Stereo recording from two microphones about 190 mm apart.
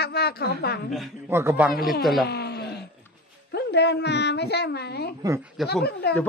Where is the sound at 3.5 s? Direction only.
60° left (ahead or behind).